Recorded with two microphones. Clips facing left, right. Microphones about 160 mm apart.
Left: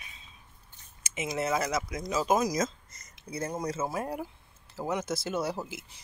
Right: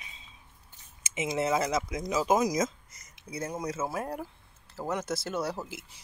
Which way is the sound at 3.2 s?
Centre (ahead or behind).